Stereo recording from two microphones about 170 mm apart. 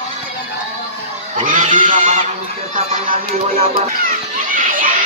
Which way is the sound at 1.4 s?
50° right (ahead or behind).